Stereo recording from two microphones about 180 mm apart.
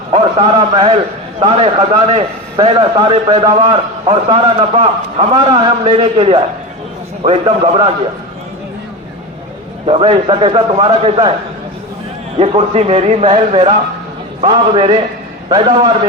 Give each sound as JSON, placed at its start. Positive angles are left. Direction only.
{"t": 0.1, "sound": "a man's voice", "side_deg": -30}
{"t": 9.8, "sound": "a man's voice", "side_deg": -30}
{"t": 12.4, "sound": "a man's voice", "side_deg": -35}